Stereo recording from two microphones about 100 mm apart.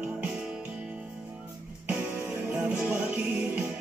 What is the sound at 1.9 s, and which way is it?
Music, 10° right (ahead or behind).